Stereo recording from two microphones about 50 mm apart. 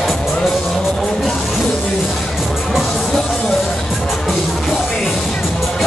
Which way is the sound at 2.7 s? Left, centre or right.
Centre.